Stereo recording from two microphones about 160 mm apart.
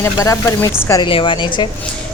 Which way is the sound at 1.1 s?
30° left (ahead or behind).